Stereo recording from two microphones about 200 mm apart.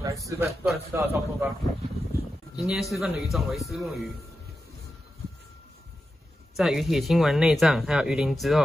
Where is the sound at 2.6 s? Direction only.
Centre (ahead or behind).